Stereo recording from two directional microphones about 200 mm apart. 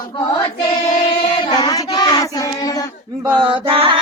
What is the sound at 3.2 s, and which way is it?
Music, 20° right (ahead or behind).